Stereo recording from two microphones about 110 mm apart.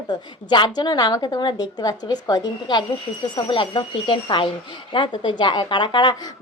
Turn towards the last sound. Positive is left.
turn(degrees=40)  # may be behind; listen again after turning